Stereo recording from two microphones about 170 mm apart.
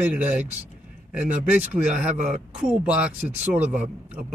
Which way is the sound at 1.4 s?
45° right (ahead or behind).